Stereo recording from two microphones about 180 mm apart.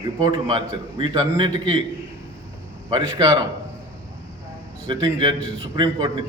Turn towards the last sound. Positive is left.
turn(degrees=-25)  # may be behind; listen again after turning